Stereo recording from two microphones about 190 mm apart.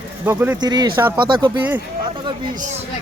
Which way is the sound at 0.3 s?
10° right (ahead or behind).